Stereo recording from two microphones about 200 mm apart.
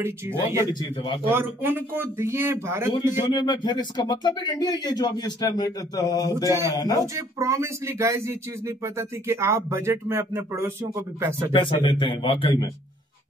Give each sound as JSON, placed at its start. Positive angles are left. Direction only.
{"t": 0.0, "sound": "speech", "side_deg": -10}
{"t": 0.7, "sound": "speech", "side_deg": 20}
{"t": 1.3, "sound": "speech", "side_deg": -10}
{"t": 3.3, "sound": "speech", "side_deg": 20}
{"t": 7.0, "sound": "speech", "side_deg": -15}
{"t": 11.5, "sound": "speech", "side_deg": 25}